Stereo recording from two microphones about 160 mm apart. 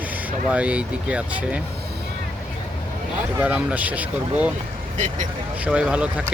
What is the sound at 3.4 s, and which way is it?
Speech, 10° right (ahead or behind).